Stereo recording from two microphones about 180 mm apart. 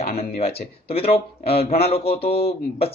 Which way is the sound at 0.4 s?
35° left (ahead or behind).